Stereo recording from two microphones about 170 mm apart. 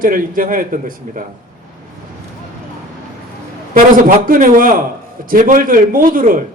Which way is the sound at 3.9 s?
55° right (ahead or behind).